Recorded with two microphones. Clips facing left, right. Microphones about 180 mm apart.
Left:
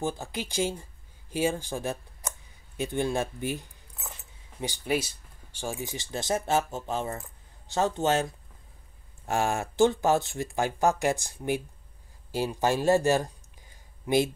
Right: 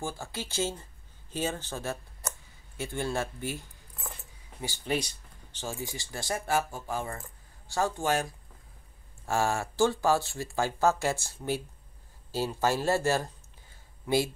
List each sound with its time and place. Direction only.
0.0 s speech: 15° left (ahead or behind)
4.8 s speech: 5° left (ahead or behind)
12.3 s a sound: 15° left (ahead or behind)